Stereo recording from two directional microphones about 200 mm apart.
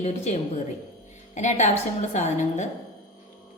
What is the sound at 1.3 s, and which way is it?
Music, 35° left (ahead or behind).